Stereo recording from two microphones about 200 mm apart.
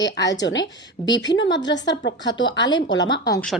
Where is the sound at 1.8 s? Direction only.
60° left (ahead or behind).